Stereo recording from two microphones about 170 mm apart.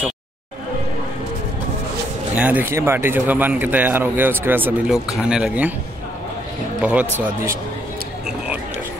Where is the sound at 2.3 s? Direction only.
10° right (ahead or behind).